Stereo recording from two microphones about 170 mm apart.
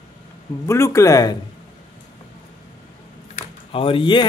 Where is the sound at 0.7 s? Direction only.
15° left (ahead or behind).